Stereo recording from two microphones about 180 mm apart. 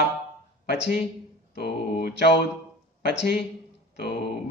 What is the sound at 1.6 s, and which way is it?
Speech, 60° left (ahead or behind).